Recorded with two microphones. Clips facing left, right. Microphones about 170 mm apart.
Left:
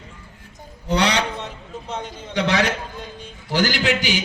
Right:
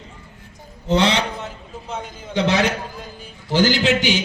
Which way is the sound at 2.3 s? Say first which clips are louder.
Right 2 dB; 20° right (ahead or behind).